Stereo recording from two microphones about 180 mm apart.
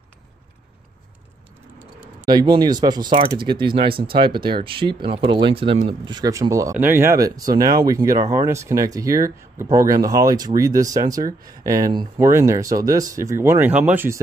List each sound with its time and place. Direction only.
2.3 s speech: 20° right (ahead or behind)